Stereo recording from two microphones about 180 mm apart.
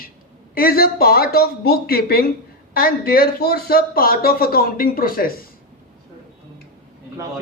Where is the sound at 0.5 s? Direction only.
55° left (ahead or behind).